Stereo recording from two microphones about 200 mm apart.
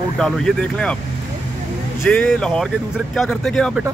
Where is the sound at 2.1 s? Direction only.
5° left (ahead or behind).